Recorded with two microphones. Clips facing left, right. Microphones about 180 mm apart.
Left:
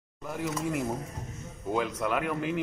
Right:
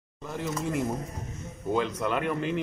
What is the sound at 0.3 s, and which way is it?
Speech, 10° left (ahead or behind).